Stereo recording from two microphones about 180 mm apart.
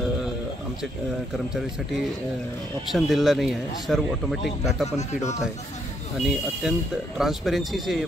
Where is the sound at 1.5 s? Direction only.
Centre (ahead or behind).